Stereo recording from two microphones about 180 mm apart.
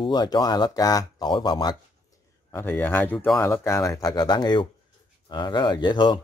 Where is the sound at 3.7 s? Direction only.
20° left (ahead or behind).